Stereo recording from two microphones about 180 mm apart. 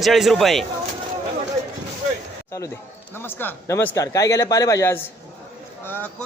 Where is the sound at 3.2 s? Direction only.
10° left (ahead or behind).